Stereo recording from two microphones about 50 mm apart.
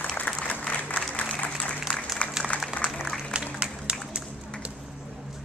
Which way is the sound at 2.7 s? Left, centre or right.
Centre.